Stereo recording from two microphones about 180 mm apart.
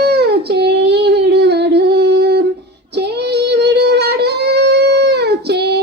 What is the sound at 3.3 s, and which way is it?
Music, 65° right (ahead or behind).